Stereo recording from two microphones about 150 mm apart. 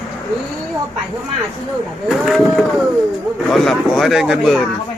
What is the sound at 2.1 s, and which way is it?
A man's voice, centre (ahead or behind).